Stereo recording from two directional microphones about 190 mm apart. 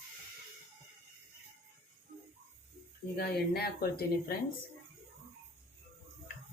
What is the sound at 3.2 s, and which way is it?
Speech, 55° left (ahead or behind).